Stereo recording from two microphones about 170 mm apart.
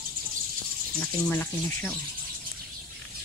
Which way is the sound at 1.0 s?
5° left (ahead or behind).